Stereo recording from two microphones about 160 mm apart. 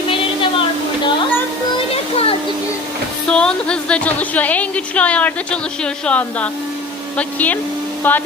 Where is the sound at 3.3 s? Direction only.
5° left (ahead or behind).